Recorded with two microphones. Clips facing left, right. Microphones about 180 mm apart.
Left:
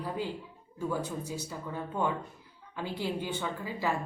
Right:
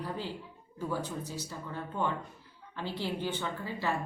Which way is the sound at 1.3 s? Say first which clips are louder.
Left 3 dB; 10° left (ahead or behind).